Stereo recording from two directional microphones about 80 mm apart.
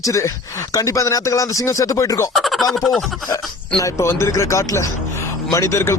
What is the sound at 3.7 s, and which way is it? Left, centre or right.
Speech, left.